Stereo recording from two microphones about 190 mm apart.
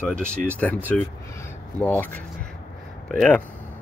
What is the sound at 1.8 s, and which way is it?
Speech, 10° left (ahead or behind).